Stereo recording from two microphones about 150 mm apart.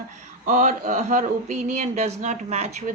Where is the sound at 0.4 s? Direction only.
55° right (ahead or behind).